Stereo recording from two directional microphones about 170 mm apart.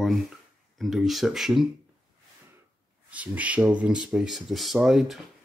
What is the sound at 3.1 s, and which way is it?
Speech, 10° right (ahead or behind).